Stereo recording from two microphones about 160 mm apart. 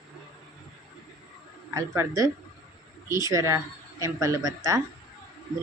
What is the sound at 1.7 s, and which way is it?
Speech, 20° right (ahead or behind).